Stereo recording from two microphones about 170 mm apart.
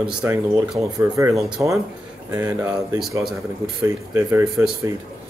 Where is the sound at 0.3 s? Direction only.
20° right (ahead or behind).